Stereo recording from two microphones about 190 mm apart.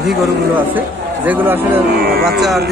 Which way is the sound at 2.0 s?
55° right (ahead or behind).